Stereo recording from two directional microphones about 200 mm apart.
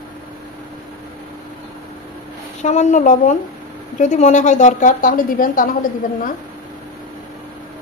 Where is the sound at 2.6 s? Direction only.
35° left (ahead or behind).